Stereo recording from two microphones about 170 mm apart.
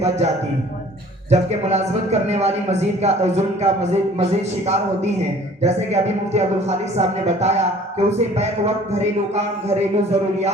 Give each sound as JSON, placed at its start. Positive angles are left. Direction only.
{"t": 1.3, "sound": "speech", "side_deg": -40}